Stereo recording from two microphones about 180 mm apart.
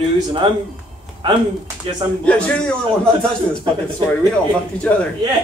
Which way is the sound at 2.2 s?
5° left (ahead or behind).